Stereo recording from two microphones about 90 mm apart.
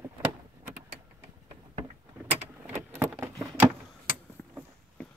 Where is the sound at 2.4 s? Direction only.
25° right (ahead or behind).